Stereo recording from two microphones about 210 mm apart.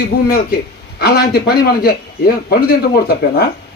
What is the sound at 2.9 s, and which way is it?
Speech, 50° left (ahead or behind).